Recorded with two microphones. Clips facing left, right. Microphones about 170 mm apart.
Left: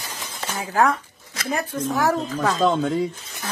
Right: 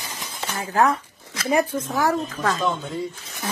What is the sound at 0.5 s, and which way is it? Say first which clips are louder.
Speech: even; centre (ahead or behind).